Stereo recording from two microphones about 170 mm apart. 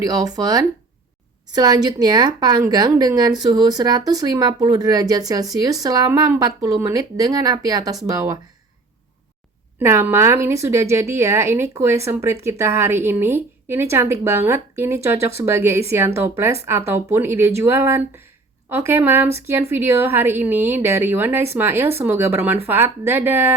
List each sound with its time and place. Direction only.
0.0 s speech: 20° right (ahead or behind)
9.7 s a woman's voice: 15° right (ahead or behind)